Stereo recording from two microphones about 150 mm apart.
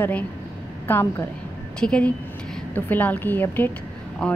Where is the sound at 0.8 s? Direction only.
15° left (ahead or behind).